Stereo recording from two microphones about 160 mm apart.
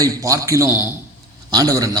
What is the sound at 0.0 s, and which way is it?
A man's voice, 20° right (ahead or behind).